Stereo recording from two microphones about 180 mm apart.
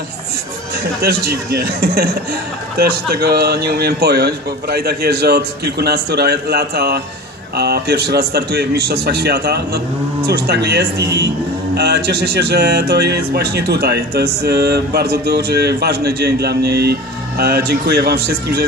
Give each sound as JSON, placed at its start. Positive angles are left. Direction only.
{"t": 1.0, "sound": "speech", "side_deg": -60}